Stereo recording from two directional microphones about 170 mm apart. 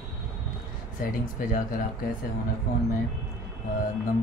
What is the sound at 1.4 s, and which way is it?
Speech, 55° left (ahead or behind).